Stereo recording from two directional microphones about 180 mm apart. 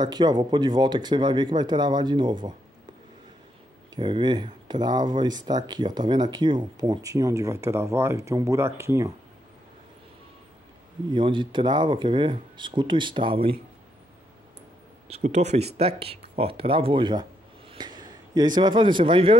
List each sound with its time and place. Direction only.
0.0 s speech: 25° right (ahead or behind)
3.9 s speech: 25° right (ahead or behind)
11.1 s speech: 25° right (ahead or behind)
15.0 s speech: 35° right (ahead or behind)